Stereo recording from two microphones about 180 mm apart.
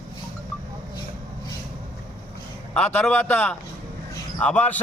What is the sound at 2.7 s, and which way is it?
A man's voice, 10° left (ahead or behind).